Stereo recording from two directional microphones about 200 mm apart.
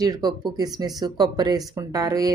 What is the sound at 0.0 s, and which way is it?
Speech, 20° right (ahead or behind).